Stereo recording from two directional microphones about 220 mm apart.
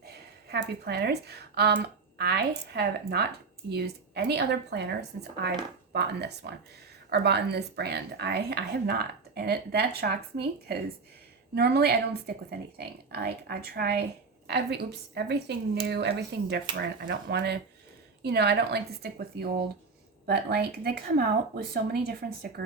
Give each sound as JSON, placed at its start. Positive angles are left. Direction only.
{"t": 0.0, "sound": "speech", "side_deg": -45}